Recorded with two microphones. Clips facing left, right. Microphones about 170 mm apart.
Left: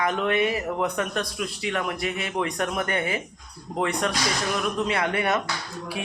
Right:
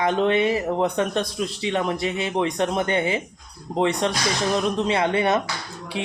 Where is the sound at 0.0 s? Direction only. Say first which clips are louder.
Right 4 dB; 30° right (ahead or behind).